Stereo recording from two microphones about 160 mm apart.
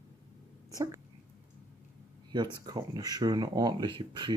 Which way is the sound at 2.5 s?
25° right (ahead or behind).